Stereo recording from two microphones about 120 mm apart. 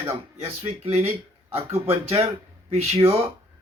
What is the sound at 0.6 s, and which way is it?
Speech, 55° right (ahead or behind).